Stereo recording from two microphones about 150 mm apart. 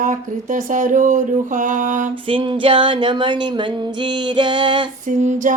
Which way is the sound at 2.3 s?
35° right (ahead or behind).